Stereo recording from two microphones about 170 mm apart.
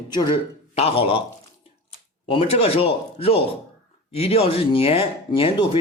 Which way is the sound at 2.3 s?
35° left (ahead or behind).